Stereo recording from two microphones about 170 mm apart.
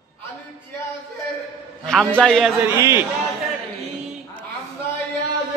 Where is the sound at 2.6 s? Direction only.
15° right (ahead or behind).